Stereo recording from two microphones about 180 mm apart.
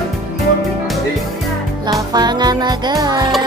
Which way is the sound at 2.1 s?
25° right (ahead or behind).